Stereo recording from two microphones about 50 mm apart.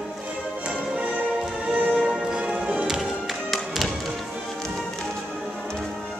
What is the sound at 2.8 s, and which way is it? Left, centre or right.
Music, centre.